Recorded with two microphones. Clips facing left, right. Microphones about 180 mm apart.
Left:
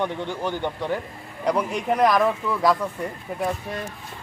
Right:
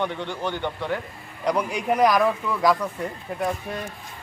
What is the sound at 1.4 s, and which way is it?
Speech, centre (ahead or behind).